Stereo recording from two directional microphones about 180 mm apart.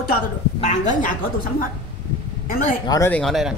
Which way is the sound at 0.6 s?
40° left (ahead or behind).